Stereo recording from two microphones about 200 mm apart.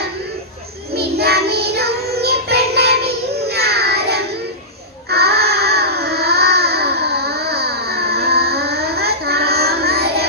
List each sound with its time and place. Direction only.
0.9 s music: 55° right (ahead or behind)
3.5 s child singing: 55° right (ahead or behind)
5.1 s a sound: 55° right (ahead or behind)